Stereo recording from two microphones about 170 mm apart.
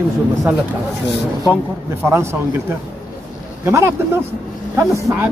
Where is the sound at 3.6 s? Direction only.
15° right (ahead or behind).